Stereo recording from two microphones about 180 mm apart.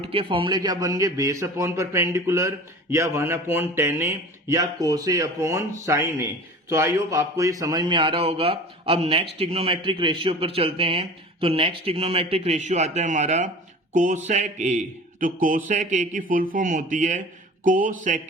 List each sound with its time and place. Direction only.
0.0 s a man's voice: 30° right (ahead or behind); by 18.2 s 45° right (ahead or behind)